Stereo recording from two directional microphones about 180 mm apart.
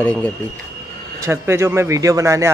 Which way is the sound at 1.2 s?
15° right (ahead or behind).